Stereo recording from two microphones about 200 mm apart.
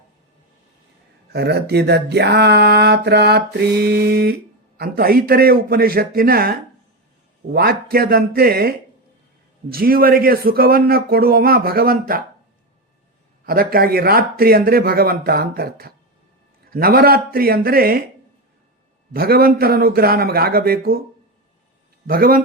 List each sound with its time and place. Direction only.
1.3 s speech: 55° right (ahead or behind)
13.4 s speech: 45° right (ahead or behind)
19.1 s speech: 50° right (ahead or behind)
22.0 s speech: 45° right (ahead or behind)